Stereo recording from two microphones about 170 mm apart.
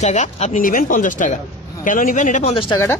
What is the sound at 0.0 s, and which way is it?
Speech, 40° left (ahead or behind).